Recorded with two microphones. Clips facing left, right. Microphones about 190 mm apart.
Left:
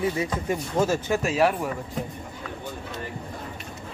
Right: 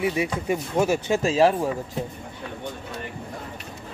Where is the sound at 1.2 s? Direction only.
30° right (ahead or behind).